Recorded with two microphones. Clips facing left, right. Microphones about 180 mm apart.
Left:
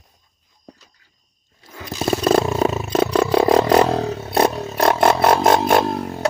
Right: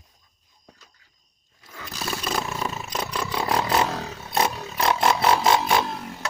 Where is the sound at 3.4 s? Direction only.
40° left (ahead or behind).